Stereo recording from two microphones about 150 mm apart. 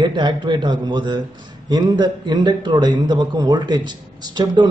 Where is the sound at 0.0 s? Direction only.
30° right (ahead or behind).